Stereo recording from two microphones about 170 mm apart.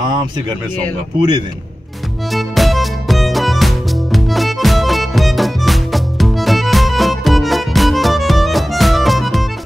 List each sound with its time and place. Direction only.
0.0 s speech: 25° right (ahead or behind)
2.3 s music: centre (ahead or behind)